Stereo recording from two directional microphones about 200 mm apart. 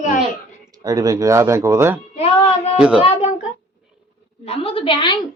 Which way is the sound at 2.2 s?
30° left (ahead or behind).